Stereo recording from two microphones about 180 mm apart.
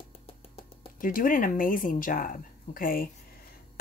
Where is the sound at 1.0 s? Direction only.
50° left (ahead or behind).